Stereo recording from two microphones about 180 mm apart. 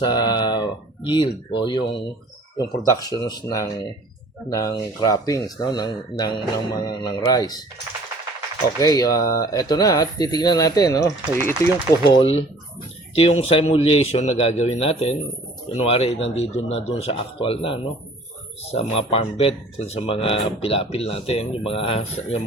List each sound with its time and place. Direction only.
0.0 s speech: 20° left (ahead or behind)
8.8 s speech: 20° left (ahead or behind)
12.0 s speech: 30° left (ahead or behind)